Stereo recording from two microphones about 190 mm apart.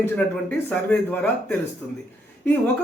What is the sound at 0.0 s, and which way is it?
Speech, 10° left (ahead or behind).